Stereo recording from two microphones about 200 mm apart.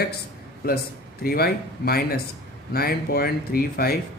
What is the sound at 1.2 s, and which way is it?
Speech, 50° left (ahead or behind).